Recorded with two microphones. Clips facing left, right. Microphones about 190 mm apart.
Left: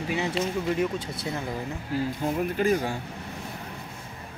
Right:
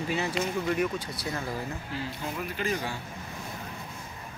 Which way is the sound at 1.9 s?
45° left (ahead or behind).